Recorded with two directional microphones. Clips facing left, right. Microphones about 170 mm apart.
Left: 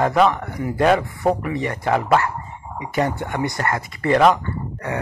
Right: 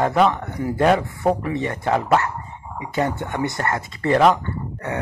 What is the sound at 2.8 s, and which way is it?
Speech, 20° left (ahead or behind).